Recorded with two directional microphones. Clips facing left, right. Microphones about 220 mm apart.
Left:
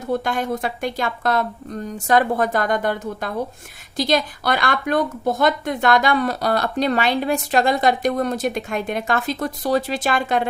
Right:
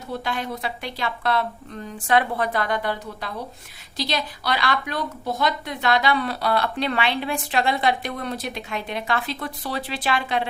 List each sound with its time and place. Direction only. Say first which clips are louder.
0.1 s a woman's voice: left 6 dB; 50° left (ahead or behind)